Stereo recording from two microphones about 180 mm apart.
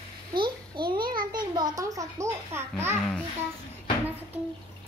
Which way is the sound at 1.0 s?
55° right (ahead or behind).